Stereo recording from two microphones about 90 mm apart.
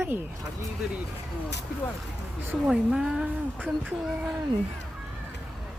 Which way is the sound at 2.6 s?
10° right (ahead or behind).